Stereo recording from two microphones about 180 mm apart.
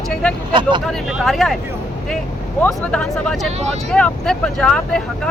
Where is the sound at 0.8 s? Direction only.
Centre (ahead or behind).